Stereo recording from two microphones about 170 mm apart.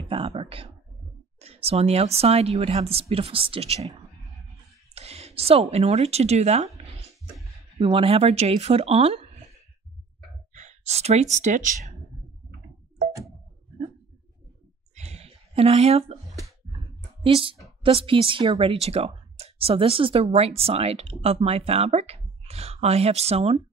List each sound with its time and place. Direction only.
0.0 s a sound: 35° right (ahead or behind)
1.4 s speech: 35° right (ahead or behind)
4.9 s speech: 35° right (ahead or behind)
7.8 s speech: 35° right (ahead or behind)
10.5 s speech: 45° right (ahead or behind)
15.0 s a sound: 40° right (ahead or behind)
16.6 s clicking: 30° right (ahead or behind)
17.2 s speech: 30° right (ahead or behind)